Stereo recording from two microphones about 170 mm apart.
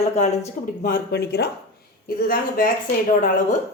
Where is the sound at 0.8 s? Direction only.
65° left (ahead or behind).